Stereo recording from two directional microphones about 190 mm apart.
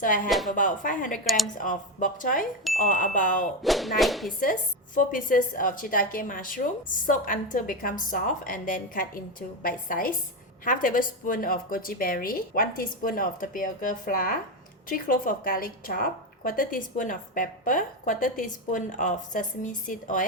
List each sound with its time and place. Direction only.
0.3 s speech: centre (ahead or behind)
0.5 s a woman's voice: 45° left (ahead or behind)
3.6 s speech: centre (ahead or behind)
4.3 s a woman's voice: 45° left (ahead or behind)